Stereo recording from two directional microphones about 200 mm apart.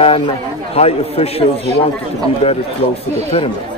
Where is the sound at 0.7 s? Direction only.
30° left (ahead or behind).